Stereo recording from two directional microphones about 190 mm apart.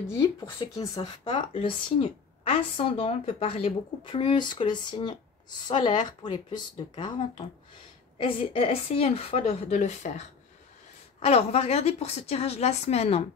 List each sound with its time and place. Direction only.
0.0 s a woman's voice: 20° left (ahead or behind)